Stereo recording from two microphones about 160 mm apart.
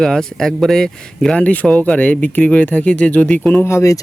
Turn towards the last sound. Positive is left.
turn(degrees=20)  # may be behind; listen again after turning